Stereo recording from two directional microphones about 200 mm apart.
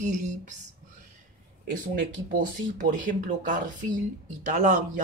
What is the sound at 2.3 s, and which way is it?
Speech, 40° right (ahead or behind).